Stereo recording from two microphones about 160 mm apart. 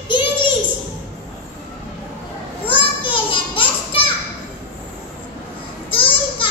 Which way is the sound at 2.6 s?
30° left (ahead or behind).